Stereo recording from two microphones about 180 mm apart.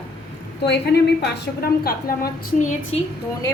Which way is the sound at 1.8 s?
50° left (ahead or behind).